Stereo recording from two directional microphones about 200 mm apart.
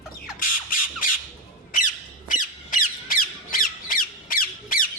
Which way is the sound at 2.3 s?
40° left (ahead or behind).